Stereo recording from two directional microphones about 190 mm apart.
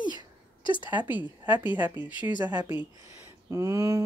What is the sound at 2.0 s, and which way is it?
Speech, 25° left (ahead or behind).